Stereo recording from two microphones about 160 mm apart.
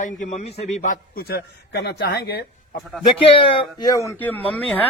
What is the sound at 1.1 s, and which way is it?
Speech, 75° left (ahead or behind).